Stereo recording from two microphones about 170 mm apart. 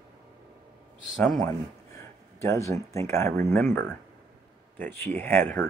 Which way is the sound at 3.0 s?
15° left (ahead or behind).